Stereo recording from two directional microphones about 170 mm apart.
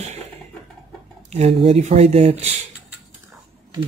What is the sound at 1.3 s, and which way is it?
Speech, 40° right (ahead or behind).